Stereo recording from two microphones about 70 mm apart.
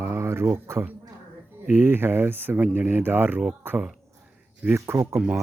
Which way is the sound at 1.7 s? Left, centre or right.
Right.